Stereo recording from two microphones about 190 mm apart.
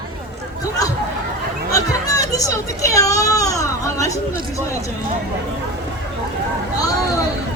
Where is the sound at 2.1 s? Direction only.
20° left (ahead or behind).